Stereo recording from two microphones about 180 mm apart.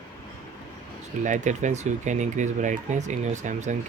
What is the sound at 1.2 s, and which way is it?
Speech, 45° right (ahead or behind).